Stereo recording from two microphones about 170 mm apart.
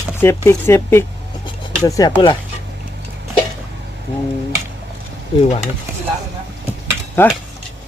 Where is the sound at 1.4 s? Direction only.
20° left (ahead or behind).